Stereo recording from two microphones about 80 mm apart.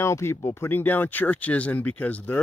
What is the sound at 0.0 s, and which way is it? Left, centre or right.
Speech, left.